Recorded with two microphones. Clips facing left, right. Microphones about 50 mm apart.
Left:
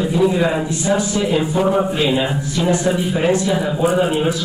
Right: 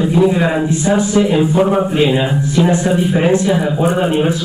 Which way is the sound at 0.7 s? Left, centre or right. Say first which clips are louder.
Right 4 dB; right.